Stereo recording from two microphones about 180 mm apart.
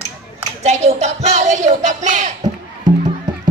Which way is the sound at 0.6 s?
40° right (ahead or behind).